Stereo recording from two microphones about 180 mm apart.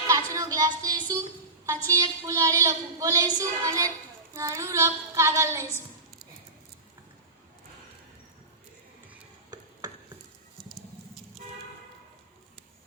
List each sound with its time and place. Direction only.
0.1 s a woman's voice: 20° right (ahead or behind)
1.9 s child singing: 20° right (ahead or behind)